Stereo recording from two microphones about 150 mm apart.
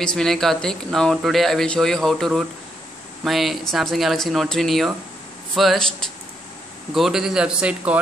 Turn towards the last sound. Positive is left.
turn(degrees=-5)  # may be behind; listen again after turning